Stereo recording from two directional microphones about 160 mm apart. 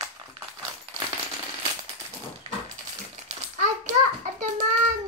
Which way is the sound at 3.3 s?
50° right (ahead or behind).